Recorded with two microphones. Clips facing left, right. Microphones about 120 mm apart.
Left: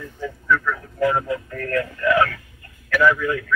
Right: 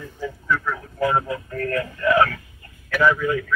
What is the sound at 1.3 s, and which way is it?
Speech, 35° right (ahead or behind).